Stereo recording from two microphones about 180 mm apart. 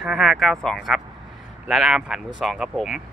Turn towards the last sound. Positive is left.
turn(degrees=0)  # may be behind; listen again after turning